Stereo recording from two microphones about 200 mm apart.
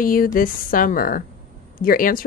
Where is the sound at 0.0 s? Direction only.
45° left (ahead or behind).